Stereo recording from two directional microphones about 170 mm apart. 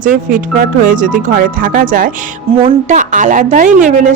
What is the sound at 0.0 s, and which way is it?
A woman's voice, 50° right (ahead or behind).